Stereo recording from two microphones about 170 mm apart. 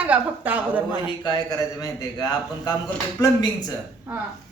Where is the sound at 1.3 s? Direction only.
20° left (ahead or behind).